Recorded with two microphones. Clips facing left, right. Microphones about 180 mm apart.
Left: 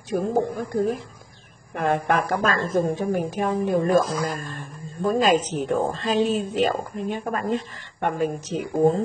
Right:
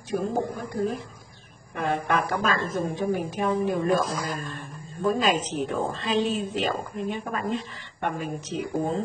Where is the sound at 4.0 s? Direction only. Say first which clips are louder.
Left 3 dB; centre (ahead or behind).